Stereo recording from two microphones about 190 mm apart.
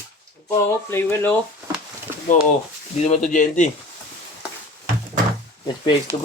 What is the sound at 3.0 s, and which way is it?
Speech, 40° left (ahead or behind).